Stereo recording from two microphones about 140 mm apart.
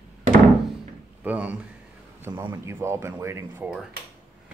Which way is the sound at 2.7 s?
20° right (ahead or behind).